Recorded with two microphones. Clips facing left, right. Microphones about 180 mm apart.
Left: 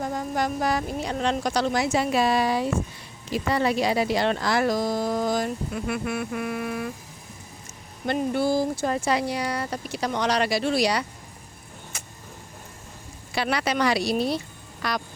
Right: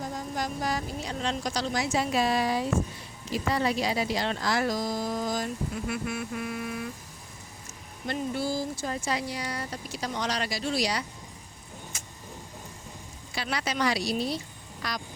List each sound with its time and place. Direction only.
0.0 s speech: 65° left (ahead or behind)
8.0 s speech: 60° left (ahead or behind)
11.9 s vehicle: 65° left (ahead or behind)
13.3 s speech: 65° left (ahead or behind)